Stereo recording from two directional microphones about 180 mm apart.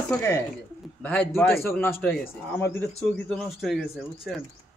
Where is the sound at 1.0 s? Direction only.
5° left (ahead or behind).